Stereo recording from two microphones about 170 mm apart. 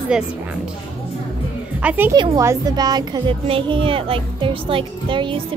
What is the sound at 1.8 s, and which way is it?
Speech, 10° right (ahead or behind).